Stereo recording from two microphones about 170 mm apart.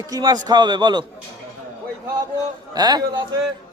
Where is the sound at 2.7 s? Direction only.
25° right (ahead or behind).